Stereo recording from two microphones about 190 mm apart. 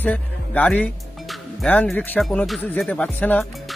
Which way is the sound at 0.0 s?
10° left (ahead or behind).